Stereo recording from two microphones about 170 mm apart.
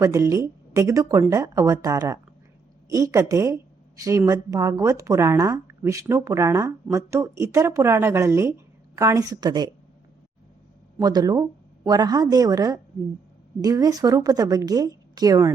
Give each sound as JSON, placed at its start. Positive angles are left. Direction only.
{"t": 0.0, "sound": "a woman's voice", "side_deg": -20}
{"t": 11.0, "sound": "a woman's voice", "side_deg": -25}